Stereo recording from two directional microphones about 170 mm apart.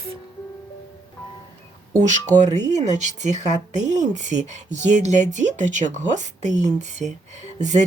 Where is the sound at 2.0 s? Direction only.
45° right (ahead or behind).